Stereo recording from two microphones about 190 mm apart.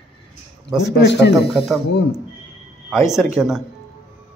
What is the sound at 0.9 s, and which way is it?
Speech, 65° left (ahead or behind).